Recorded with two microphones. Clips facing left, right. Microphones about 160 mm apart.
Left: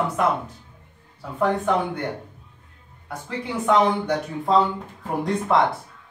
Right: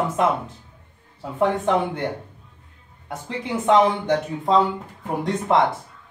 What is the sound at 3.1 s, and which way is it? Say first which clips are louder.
Speech: right 2 dB; 25° right (ahead or behind).